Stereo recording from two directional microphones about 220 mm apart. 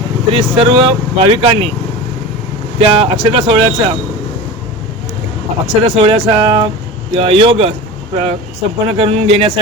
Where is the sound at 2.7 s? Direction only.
25° right (ahead or behind).